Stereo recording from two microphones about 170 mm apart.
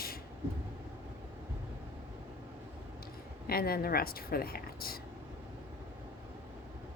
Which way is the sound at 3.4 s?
60° left (ahead or behind).